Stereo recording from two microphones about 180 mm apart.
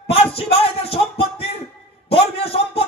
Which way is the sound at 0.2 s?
35° left (ahead or behind).